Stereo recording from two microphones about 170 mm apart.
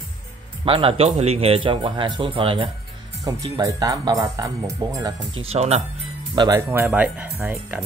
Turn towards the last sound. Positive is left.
turn(degrees=-10)  # may be behind; listen again after turning